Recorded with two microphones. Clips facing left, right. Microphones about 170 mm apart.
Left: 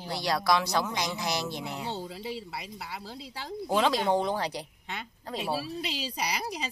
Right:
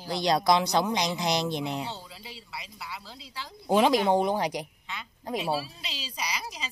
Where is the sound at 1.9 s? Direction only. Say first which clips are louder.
Left 6 dB; 50° left (ahead or behind).